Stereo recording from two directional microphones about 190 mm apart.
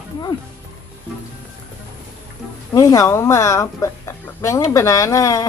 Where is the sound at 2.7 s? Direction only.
15° left (ahead or behind).